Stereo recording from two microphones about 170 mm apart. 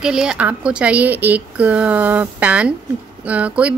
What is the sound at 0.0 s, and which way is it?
Speech, 5° right (ahead or behind).